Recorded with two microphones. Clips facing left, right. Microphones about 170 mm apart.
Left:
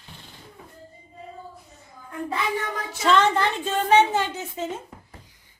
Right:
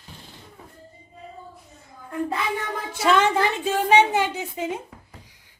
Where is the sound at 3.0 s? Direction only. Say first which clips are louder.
Right 1 dB; 10° right (ahead or behind).